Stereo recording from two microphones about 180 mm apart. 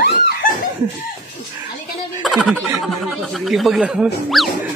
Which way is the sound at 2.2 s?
Centre (ahead or behind).